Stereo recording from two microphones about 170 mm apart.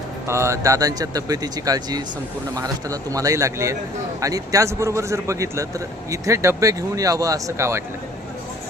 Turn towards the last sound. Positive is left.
turn(degrees=-20)  # may be behind; listen again after turning